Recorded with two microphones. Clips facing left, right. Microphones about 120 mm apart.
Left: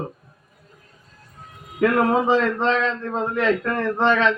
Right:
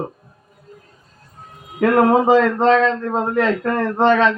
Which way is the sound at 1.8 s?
40° right (ahead or behind).